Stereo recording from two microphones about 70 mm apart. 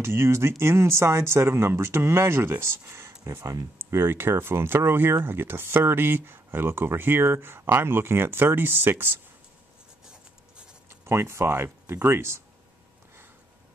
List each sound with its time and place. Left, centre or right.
0.0 s speech: right
10.9 s speech: right